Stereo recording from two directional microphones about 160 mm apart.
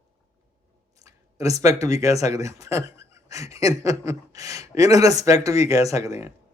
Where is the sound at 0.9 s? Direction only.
20° right (ahead or behind).